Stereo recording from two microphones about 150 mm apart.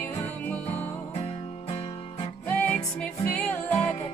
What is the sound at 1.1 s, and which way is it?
Music, 45° left (ahead or behind).